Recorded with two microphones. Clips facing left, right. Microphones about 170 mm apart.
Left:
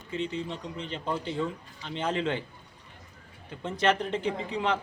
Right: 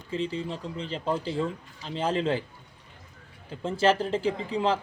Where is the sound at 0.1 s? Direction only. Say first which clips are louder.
Right 2 dB; 30° right (ahead or behind).